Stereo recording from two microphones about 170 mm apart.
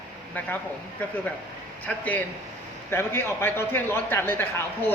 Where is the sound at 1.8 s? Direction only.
10° left (ahead or behind).